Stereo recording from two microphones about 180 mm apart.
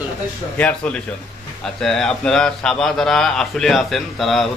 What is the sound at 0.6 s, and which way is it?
A man's voice, 5° left (ahead or behind).